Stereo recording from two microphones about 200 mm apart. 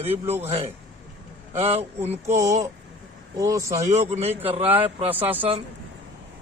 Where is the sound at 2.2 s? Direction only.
15° right (ahead or behind).